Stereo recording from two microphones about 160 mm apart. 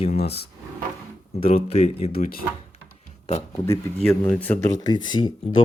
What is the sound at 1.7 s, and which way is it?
Speech, 40° left (ahead or behind).